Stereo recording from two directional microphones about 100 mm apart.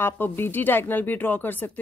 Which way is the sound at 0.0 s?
20° left (ahead or behind).